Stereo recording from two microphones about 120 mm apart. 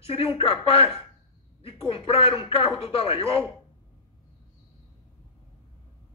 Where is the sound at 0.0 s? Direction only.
50° left (ahead or behind).